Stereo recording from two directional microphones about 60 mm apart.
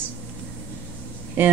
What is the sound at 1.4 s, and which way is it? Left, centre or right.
Speech, right.